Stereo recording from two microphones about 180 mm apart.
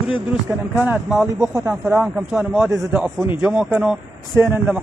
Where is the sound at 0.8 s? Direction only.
5° right (ahead or behind).